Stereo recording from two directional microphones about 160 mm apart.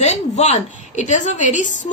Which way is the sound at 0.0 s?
45° left (ahead or behind).